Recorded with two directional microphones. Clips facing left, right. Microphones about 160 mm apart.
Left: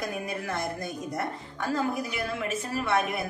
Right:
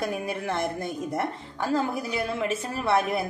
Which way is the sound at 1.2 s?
30° right (ahead or behind).